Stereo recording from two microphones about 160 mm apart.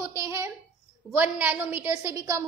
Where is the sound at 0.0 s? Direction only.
20° right (ahead or behind).